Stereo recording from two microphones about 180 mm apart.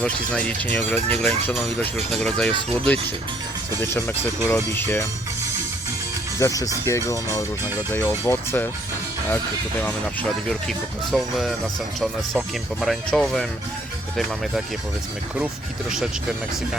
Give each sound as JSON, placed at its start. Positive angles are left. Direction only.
{"t": 0.0, "sound": "speech", "side_deg": 5}
{"t": 6.4, "sound": "speech", "side_deg": 20}
{"t": 9.8, "sound": "speech", "side_deg": 5}